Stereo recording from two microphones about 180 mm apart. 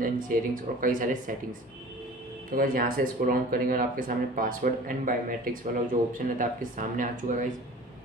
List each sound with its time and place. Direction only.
0.0 s speech: 50° right (ahead or behind)
2.5 s speech: 50° right (ahead or behind)